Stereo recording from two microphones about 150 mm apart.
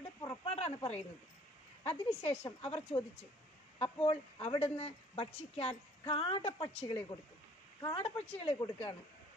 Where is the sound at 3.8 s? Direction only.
40° left (ahead or behind).